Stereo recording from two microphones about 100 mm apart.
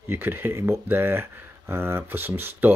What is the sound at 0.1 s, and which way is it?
Speech, 20° right (ahead or behind).